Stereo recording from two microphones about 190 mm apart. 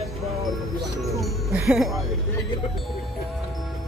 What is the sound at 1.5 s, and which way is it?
Speech, 5° right (ahead or behind).